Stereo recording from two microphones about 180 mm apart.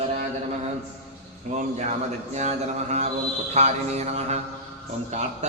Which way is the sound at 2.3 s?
40° right (ahead or behind).